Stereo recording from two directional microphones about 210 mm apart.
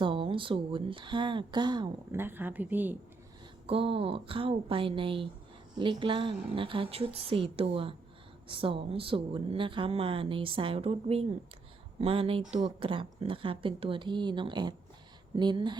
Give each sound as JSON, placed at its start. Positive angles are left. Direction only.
{"t": 0.0, "sound": "speech", "side_deg": -25}
{"t": 3.7, "sound": "speech", "side_deg": -25}